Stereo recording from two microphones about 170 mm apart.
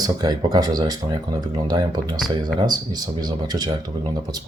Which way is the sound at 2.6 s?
25° right (ahead or behind).